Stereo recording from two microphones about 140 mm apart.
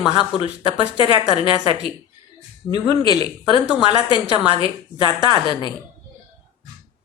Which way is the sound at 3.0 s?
30° left (ahead or behind).